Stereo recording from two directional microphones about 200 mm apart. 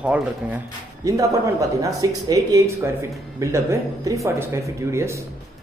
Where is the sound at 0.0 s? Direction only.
5° right (ahead or behind).